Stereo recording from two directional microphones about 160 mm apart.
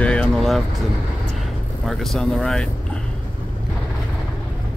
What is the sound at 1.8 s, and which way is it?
Speech, centre (ahead or behind).